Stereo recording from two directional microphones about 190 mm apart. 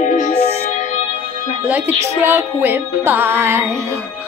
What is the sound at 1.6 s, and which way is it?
Speech, 10° right (ahead or behind).